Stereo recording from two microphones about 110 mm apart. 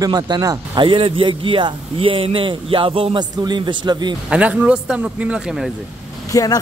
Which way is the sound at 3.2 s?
40° right (ahead or behind).